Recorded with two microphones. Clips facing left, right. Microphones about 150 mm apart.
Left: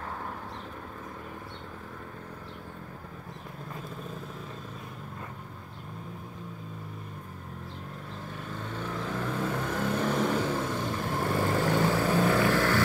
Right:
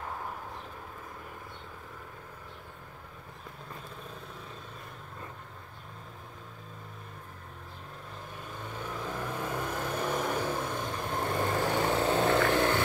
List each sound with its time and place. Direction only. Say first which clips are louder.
8.7 s vehicle: left 3 dB; 10° right (ahead or behind)